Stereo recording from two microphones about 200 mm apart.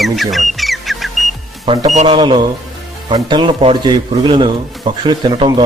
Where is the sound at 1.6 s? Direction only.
25° right (ahead or behind).